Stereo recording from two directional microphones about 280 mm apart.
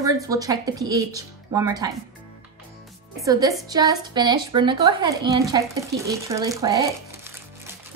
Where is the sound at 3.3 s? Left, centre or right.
Centre.